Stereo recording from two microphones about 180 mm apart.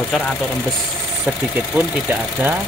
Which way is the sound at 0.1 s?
5° left (ahead or behind).